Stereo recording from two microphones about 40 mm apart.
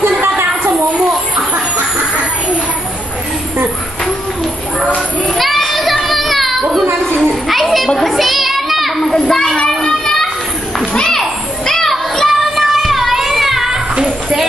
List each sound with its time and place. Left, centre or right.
0.0 s a sound: right
5.4 s child singing: centre
7.2 s children playing: centre
9.1 s children playing: centre
11.0 s children playing: centre
13.7 s children playing: right